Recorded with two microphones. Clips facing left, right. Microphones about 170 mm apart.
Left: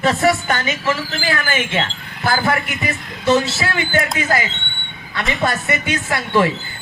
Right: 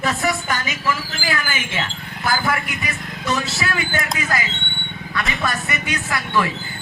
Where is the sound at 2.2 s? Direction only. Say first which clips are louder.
Left 3 dB; 30° left (ahead or behind).